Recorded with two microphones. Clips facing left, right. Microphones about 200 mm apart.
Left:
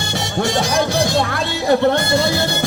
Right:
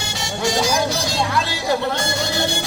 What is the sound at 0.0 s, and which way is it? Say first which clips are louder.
Music: left 3 dB; 60° left (ahead or behind).